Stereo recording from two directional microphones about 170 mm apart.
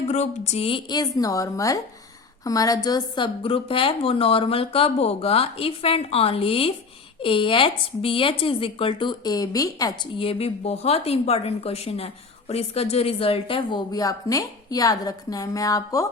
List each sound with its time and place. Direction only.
0.1 s a woman's voice: 40° left (ahead or behind); by 16.0 s 20° left (ahead or behind)